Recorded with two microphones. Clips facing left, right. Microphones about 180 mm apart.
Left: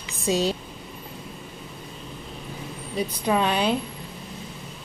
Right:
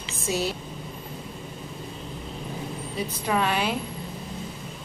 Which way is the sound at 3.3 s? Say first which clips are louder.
Left 3 dB; 20° left (ahead or behind).